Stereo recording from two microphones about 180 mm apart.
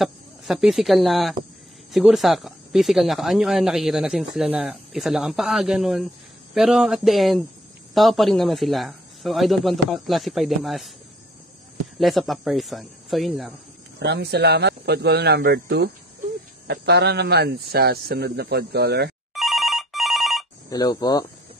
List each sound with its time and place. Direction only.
0.0 s speech: centre (ahead or behind)
12.0 s speech: centre (ahead or behind)
13.9 s speech: 65° right (ahead or behind)
16.6 s speech: 75° right (ahead or behind)
19.3 s telephone bell ringing: centre (ahead or behind)
20.7 s speech: 20° left (ahead or behind)